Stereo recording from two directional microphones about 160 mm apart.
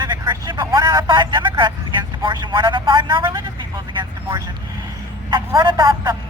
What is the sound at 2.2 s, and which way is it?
Speech, 30° right (ahead or behind).